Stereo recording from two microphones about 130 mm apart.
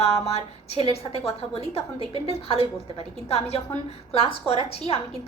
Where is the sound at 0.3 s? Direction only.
50° left (ahead or behind).